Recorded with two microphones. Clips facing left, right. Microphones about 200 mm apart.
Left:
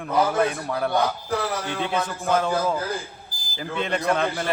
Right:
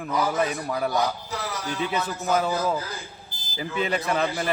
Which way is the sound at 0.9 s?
55° left (ahead or behind).